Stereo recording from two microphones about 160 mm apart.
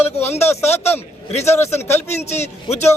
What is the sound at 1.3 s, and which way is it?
Speech, 45° left (ahead or behind).